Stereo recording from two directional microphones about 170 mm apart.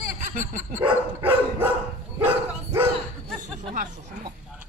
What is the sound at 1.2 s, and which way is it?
Dog, 10° right (ahead or behind).